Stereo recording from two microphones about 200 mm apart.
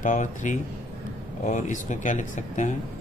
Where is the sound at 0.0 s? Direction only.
40° left (ahead or behind).